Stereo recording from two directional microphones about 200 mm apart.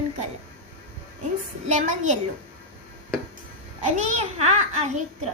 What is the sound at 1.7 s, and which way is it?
Speech, 40° right (ahead or behind).